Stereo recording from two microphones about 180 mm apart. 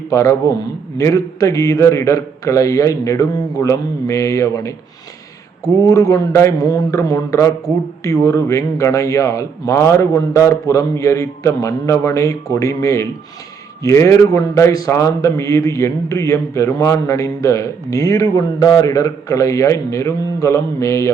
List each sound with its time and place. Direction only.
0.1 s a man's voice: 20° left (ahead or behind)